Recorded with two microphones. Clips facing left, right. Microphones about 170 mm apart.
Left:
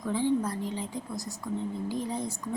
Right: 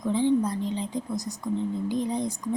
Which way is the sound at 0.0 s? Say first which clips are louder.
Right 4 dB; 20° right (ahead or behind).